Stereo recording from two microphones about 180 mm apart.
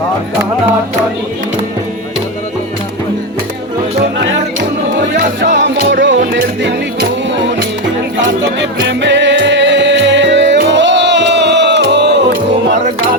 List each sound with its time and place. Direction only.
5.4 s music: 80° right
8.9 s music: 80° right